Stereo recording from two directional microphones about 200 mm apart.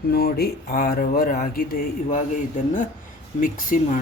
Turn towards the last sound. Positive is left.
turn(degrees=40)  # may be behind; listen again after turning